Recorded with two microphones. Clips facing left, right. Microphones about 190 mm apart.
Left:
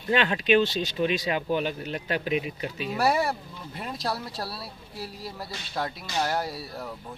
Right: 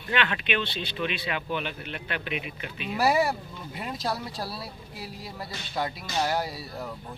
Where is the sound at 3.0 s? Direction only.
Centre (ahead or behind).